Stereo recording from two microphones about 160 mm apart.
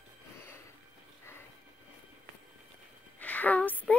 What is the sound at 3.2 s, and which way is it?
Music, 10° left (ahead or behind).